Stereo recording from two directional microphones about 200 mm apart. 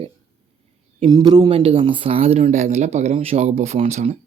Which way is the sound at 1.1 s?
20° right (ahead or behind).